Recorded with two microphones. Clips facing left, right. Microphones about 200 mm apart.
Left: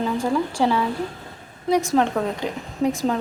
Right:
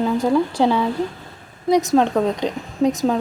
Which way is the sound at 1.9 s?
15° right (ahead or behind).